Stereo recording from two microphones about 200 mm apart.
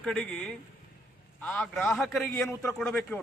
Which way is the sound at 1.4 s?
5° left (ahead or behind).